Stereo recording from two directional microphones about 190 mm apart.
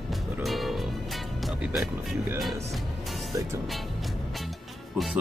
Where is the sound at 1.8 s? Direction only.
15° right (ahead or behind).